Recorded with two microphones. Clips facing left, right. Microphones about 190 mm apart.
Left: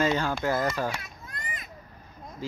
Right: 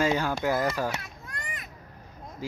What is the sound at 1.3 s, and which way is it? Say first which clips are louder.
Children playing: even; 75° right (ahead or behind).